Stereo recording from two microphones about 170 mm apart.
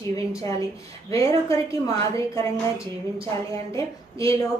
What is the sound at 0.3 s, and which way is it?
A woman's voice, 20° left (ahead or behind).